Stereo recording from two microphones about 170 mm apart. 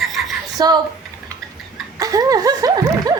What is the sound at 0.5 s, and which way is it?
Speech, 25° right (ahead or behind).